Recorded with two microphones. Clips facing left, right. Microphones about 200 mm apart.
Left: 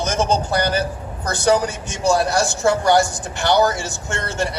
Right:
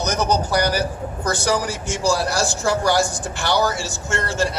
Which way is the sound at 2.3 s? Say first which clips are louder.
Left 3 dB; 65° left (ahead or behind).